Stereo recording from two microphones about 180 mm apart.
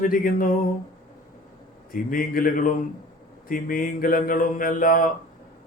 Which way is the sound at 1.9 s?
50° left (ahead or behind).